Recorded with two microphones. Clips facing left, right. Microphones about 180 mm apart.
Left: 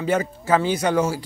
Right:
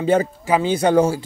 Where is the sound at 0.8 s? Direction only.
30° right (ahead or behind).